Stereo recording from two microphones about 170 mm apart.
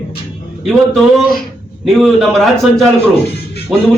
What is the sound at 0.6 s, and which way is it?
A man's voice, centre (ahead or behind).